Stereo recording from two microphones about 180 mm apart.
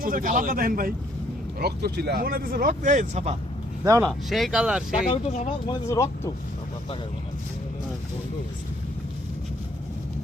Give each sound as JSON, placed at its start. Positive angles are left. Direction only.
{"t": 0.0, "sound": "speech", "side_deg": -50}
{"t": 1.5, "sound": "speech", "side_deg": -65}
{"t": 4.0, "sound": "speech", "side_deg": 0}
{"t": 4.9, "sound": "speech", "side_deg": 35}
{"t": 5.6, "sound": "speech", "side_deg": 20}